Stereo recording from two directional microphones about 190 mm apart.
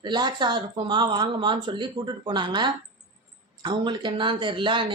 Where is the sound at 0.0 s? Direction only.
25° right (ahead or behind).